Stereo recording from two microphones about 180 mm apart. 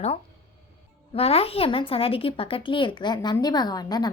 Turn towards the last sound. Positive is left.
turn(degrees=20)  # may be behind; listen again after turning